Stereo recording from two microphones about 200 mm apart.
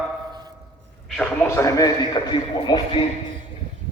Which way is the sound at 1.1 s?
5° left (ahead or behind).